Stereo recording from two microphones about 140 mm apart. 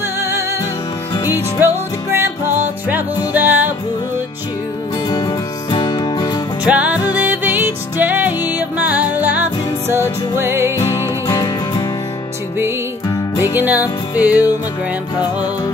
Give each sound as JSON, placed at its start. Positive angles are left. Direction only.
{"t": 0.2, "sound": "music", "side_deg": -20}
{"t": 1.6, "sound": "music", "side_deg": -15}
{"t": 5.1, "sound": "music", "side_deg": 30}
{"t": 6.6, "sound": "music", "side_deg": -10}
{"t": 10.8, "sound": "music", "side_deg": 20}
{"t": 13.6, "sound": "music", "side_deg": -15}